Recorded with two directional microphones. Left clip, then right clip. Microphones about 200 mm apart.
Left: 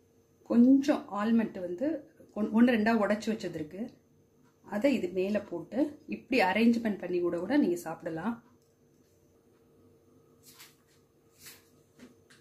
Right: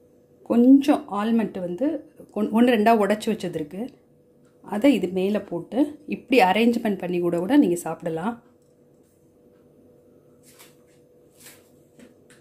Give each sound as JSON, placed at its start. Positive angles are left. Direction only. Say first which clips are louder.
{"t": 0.5, "sound": "a woman's voice", "louder": "right 8 dB", "side_deg": -35}